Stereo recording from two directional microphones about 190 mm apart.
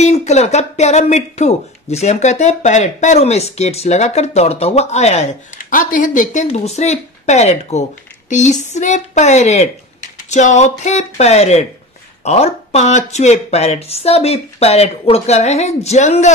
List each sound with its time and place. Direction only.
0.0 s speech: 35° left (ahead or behind)
8.3 s female singing: 40° left (ahead or behind)
8.7 s speech: 40° left (ahead or behind)